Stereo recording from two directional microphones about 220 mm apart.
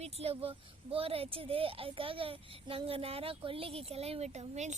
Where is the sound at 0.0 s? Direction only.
25° right (ahead or behind).